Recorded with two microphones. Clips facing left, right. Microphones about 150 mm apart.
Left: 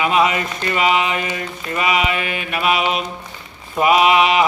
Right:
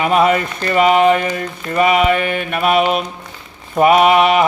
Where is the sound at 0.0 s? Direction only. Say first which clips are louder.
Right 3 dB; 50° right (ahead or behind).